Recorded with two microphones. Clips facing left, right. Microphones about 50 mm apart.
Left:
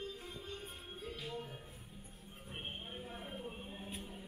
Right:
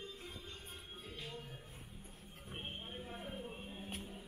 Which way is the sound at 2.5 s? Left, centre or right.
Centre.